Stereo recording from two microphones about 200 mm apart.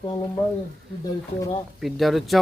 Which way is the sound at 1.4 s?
15° left (ahead or behind).